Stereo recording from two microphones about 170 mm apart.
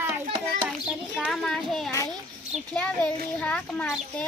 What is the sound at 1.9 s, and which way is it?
Speech, 20° left (ahead or behind).